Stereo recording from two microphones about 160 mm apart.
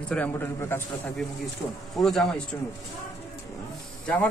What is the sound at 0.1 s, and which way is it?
Speech, 10° left (ahead or behind).